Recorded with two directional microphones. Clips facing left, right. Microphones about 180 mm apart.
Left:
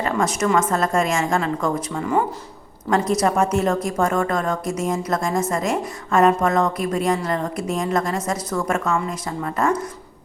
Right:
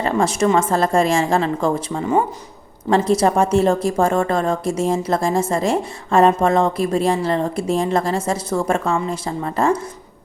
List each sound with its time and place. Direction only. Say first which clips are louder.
0.0 s a woman's voice: right 3 dB; 30° right (ahead or behind)